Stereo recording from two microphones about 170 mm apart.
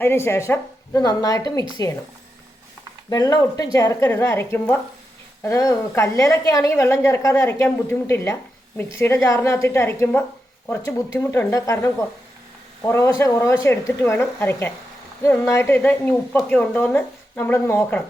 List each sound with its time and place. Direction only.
0.0 s a woman's voice: 15° left (ahead or behind)
3.1 s a woman's voice: 20° left (ahead or behind)